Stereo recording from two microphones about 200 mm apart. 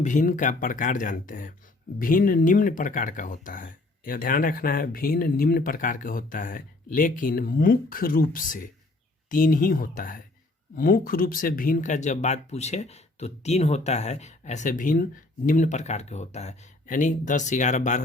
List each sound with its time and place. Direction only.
0.0 s speech: 40° left (ahead or behind)